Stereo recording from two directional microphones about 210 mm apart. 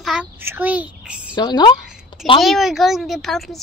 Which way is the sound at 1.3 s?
20° left (ahead or behind).